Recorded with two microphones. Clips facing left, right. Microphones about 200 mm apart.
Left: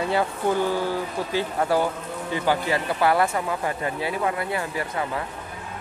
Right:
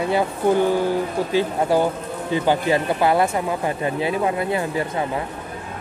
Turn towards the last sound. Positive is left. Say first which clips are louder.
# right 5 dB
turn(degrees=-25)  # may be behind; listen again after turning